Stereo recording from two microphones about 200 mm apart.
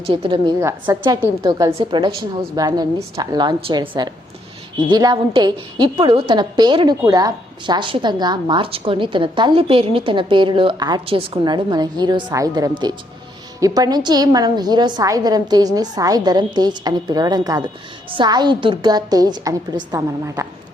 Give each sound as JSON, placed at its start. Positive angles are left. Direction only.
{"t": 0.0, "sound": "a woman's voice", "side_deg": -25}